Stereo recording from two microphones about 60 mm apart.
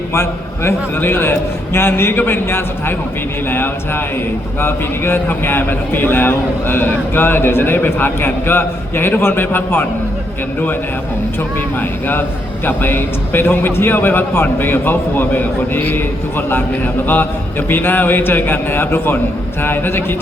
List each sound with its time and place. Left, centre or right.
0.1 s speech: left
11.8 s speech: left